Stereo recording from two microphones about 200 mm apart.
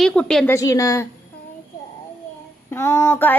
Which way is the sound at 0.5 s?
15° left (ahead or behind).